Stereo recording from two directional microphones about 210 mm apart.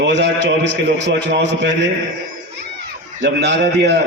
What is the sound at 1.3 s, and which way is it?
Speech, 55° right (ahead or behind).